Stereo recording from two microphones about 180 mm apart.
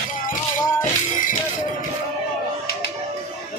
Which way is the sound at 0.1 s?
50° left (ahead or behind).